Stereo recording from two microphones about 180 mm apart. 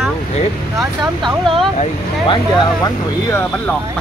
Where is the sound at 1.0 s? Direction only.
25° right (ahead or behind).